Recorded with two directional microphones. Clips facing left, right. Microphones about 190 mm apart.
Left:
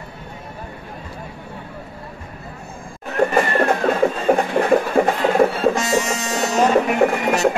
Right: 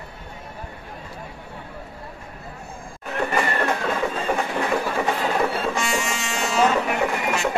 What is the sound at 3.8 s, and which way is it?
Train, 50° left (ahead or behind).